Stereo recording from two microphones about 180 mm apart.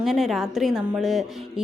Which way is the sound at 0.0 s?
Centre (ahead or behind).